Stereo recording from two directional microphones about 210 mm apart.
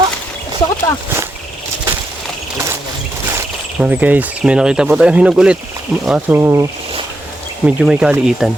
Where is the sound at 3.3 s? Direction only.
10° right (ahead or behind).